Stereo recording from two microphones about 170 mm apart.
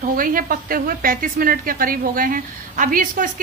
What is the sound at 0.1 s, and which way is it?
A woman's voice, 55° right (ahead or behind).